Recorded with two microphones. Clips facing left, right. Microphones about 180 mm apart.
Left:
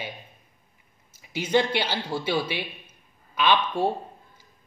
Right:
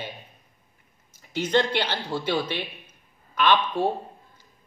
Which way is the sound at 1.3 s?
10° left (ahead or behind).